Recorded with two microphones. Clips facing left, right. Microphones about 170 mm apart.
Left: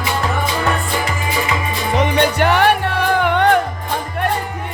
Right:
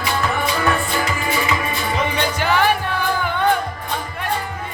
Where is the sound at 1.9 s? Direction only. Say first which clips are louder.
Left 8 dB; 65° left (ahead or behind).